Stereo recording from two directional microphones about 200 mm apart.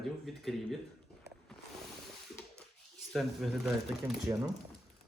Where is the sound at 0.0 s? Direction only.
Centre (ahead or behind).